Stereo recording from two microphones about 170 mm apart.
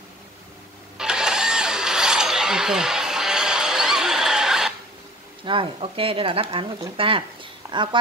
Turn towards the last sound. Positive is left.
turn(degrees=-30)  # may be behind; listen again after turning